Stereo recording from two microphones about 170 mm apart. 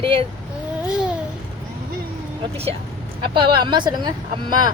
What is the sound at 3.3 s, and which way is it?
Speech, 25° right (ahead or behind).